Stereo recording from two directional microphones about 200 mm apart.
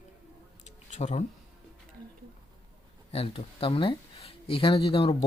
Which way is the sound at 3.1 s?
30° left (ahead or behind).